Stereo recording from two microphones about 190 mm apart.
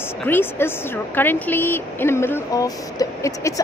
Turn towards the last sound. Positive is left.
turn(degrees=15)  # may be behind; listen again after turning